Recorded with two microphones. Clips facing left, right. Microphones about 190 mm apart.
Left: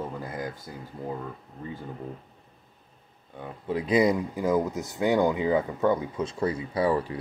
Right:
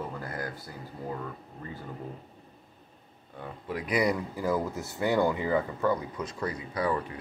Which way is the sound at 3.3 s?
25° left (ahead or behind).